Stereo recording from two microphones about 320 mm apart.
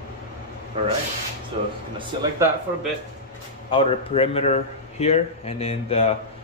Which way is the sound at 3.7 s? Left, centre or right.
Centre.